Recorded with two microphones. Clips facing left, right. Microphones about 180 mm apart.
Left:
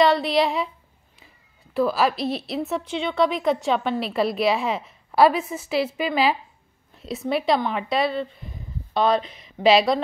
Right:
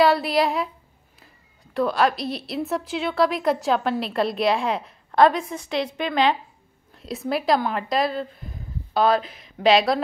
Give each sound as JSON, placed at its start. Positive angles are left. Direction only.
{"t": 0.0, "sound": "a woman's voice", "side_deg": -5}